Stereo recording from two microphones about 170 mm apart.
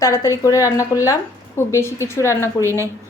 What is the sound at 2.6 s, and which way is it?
Speech, 15° right (ahead or behind).